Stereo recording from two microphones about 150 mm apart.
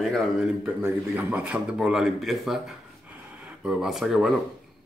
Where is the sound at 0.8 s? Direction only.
10° right (ahead or behind).